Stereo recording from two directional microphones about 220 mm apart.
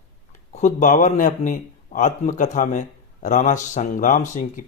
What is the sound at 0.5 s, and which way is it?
Speech, 35° left (ahead or behind).